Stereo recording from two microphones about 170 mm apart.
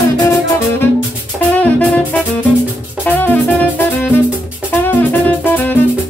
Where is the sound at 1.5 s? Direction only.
10° left (ahead or behind).